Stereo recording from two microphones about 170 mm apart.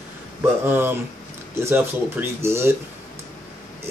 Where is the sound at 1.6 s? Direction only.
15° right (ahead or behind).